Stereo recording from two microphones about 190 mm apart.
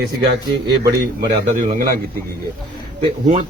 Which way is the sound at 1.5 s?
45° right (ahead or behind).